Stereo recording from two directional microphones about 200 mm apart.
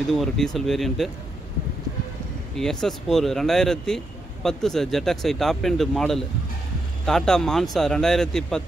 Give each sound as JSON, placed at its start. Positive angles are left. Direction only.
{"t": 0.1, "sound": "speech", "side_deg": 0}
{"t": 2.5, "sound": "speech", "side_deg": 0}